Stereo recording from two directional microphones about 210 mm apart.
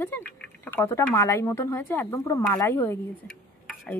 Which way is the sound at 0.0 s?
10° left (ahead or behind).